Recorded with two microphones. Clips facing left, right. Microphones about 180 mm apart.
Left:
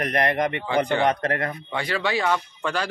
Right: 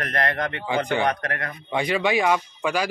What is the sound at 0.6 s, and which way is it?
Speech, 15° right (ahead or behind).